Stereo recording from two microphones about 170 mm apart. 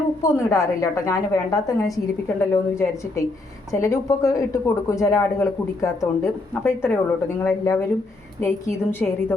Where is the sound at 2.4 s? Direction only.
15° left (ahead or behind).